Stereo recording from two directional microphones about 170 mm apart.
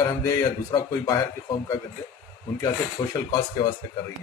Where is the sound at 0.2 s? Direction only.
15° left (ahead or behind).